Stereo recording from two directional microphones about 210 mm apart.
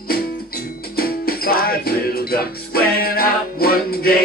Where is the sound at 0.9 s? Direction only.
45° left (ahead or behind).